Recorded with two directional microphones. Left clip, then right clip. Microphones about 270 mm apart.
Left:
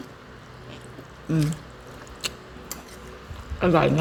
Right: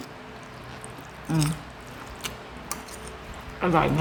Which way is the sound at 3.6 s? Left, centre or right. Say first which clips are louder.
Left 3 dB; left.